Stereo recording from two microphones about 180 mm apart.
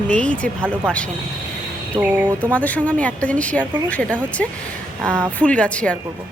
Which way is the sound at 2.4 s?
10° left (ahead or behind).